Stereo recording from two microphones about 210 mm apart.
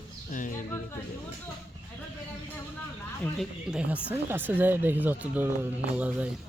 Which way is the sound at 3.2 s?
Centre (ahead or behind).